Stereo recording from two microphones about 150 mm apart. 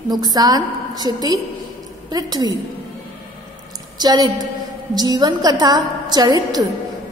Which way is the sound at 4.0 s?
30° right (ahead or behind).